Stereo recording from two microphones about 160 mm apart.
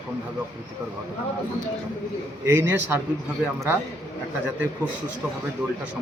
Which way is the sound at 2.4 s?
15° right (ahead or behind).